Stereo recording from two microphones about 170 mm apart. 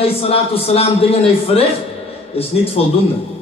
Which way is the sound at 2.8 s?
40° left (ahead or behind).